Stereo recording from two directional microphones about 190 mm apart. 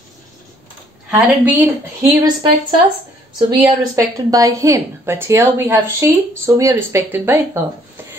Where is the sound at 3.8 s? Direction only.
15° right (ahead or behind).